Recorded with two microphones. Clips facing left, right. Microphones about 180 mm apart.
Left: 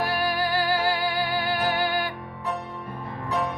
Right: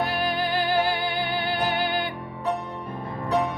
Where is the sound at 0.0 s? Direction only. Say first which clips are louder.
Even; 20° right (ahead or behind).